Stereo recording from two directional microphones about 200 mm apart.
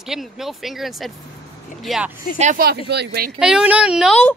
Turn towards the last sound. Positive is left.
turn(degrees=0)  # may be behind; listen again after turning